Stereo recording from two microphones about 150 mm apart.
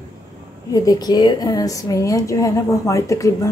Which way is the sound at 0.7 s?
25° left (ahead or behind).